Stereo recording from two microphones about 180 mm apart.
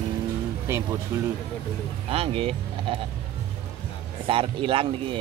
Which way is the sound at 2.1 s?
35° right (ahead or behind).